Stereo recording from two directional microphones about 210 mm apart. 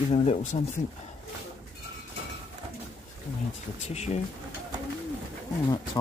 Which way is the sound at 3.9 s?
30° left (ahead or behind).